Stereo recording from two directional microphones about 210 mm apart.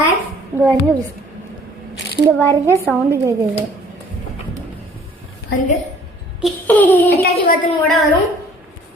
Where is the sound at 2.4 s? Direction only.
10° left (ahead or behind).